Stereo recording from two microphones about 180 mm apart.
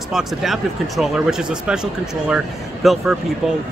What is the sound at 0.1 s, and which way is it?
A man's voice, centre (ahead or behind).